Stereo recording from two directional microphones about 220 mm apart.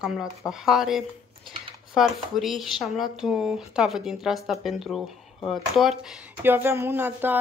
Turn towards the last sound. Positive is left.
turn(degrees=-10)  # may be behind; listen again after turning